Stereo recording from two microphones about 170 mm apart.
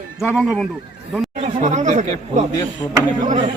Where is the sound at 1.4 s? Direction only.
45° right (ahead or behind).